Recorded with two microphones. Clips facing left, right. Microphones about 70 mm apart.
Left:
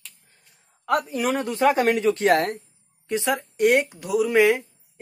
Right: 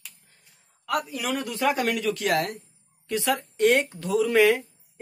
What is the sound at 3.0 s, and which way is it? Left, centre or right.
Speech, left.